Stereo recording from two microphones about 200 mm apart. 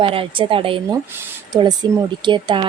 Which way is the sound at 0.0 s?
25° right (ahead or behind).